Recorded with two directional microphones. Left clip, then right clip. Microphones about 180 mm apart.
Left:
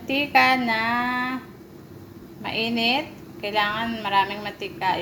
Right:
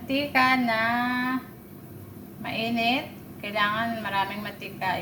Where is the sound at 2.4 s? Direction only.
35° left (ahead or behind).